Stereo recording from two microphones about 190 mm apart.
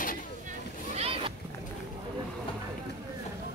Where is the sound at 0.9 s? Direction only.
30° right (ahead or behind).